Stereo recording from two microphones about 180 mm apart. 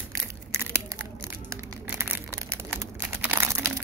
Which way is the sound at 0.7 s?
15° right (ahead or behind).